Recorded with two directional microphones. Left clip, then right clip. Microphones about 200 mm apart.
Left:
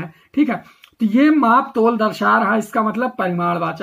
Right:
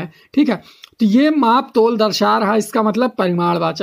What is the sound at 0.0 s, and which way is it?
Speech, 40° right (ahead or behind).